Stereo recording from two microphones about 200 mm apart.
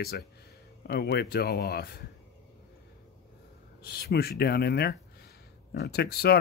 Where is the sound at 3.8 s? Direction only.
50° left (ahead or behind).